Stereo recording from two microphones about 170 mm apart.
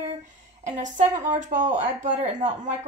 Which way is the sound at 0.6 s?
45° right (ahead or behind).